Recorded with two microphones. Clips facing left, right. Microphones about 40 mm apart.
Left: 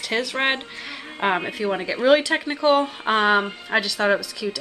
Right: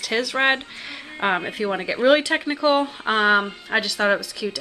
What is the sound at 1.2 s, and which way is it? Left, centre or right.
Speech, centre.